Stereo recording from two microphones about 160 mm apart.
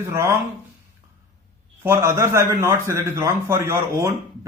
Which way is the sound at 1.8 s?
15° right (ahead or behind).